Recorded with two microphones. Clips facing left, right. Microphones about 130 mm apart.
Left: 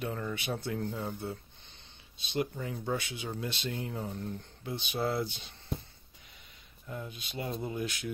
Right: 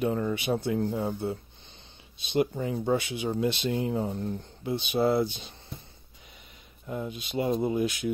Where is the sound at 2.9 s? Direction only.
20° right (ahead or behind).